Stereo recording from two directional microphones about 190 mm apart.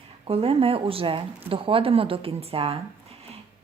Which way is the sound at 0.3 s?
30° right (ahead or behind).